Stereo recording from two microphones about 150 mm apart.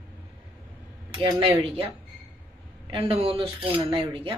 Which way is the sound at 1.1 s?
40° right (ahead or behind).